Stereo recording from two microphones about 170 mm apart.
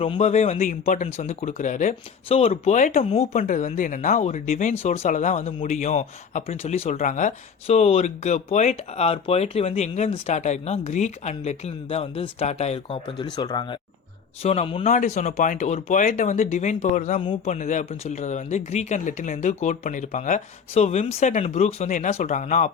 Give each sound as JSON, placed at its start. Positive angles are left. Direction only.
{"t": 0.0, "sound": "speech", "side_deg": 35}
{"t": 14.4, "sound": "speech", "side_deg": 35}
{"t": 14.8, "sound": "speech", "side_deg": 45}
{"t": 17.2, "sound": "speech", "side_deg": 30}
{"t": 17.5, "sound": "speech", "side_deg": 45}